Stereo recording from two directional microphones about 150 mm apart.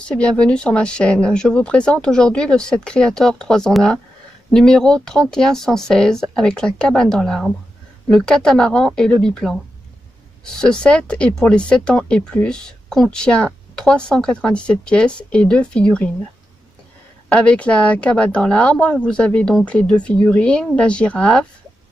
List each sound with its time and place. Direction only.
0.1 s speech: 5° left (ahead or behind)
17.3 s speech: 10° left (ahead or behind)